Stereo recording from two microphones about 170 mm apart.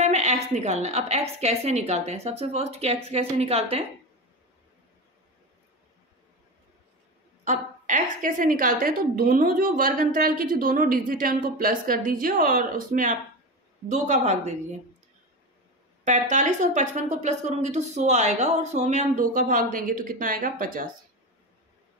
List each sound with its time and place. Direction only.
0.0 s a sound: 40° right (ahead or behind)
1.4 s a woman's voice: 40° right (ahead or behind)
7.4 s a woman's voice: 45° right (ahead or behind)
16.0 s speech: 45° right (ahead or behind)